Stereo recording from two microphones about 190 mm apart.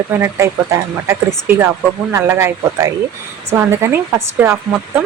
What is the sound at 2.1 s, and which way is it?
Speech, 15° right (ahead or behind).